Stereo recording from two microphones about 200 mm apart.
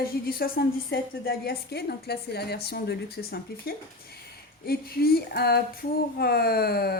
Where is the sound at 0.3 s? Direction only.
50° left (ahead or behind).